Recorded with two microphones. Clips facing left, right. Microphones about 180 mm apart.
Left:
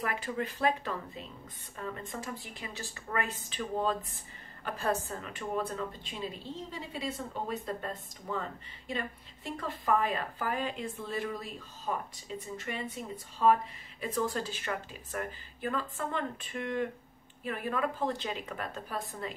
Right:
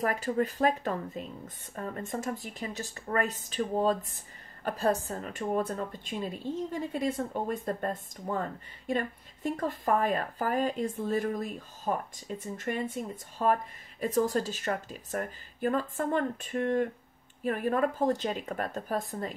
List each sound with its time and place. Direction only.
0.0 s a woman's voice: 40° right (ahead or behind)